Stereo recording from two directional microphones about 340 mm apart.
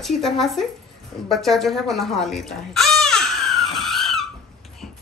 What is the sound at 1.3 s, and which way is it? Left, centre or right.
Crow, centre.